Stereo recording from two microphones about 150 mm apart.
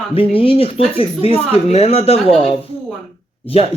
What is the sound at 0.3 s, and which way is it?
Speech, 40° left (ahead or behind).